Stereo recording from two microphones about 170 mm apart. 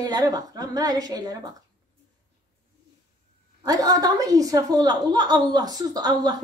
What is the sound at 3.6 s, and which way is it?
A woman's voice, 20° right (ahead or behind).